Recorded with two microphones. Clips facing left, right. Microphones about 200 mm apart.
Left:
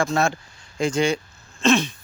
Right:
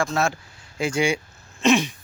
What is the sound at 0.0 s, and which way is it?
Speech, centre (ahead or behind).